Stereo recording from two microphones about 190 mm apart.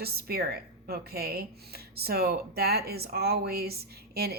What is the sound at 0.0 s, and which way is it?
A woman's voice, 55° right (ahead or behind).